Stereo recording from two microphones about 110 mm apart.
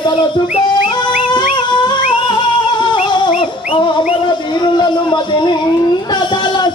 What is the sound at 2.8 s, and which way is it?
Music, 45° left (ahead or behind).